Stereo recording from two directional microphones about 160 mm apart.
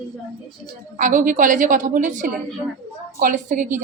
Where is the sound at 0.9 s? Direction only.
55° right (ahead or behind).